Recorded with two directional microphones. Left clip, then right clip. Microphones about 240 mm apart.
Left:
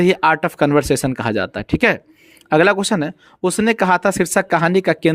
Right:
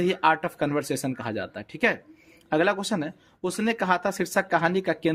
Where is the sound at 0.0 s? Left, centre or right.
Left.